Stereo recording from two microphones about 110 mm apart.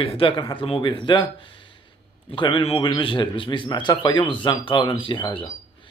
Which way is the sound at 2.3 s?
50° left (ahead or behind).